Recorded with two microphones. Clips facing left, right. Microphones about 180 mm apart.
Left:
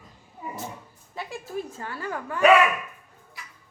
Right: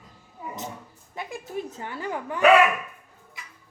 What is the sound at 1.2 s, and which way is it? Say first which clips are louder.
A woman's voice: even; 15° right (ahead or behind).